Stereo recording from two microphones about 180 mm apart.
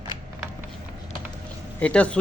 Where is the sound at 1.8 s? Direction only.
5° left (ahead or behind).